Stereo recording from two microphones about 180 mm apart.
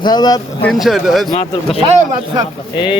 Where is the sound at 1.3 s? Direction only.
30° left (ahead or behind).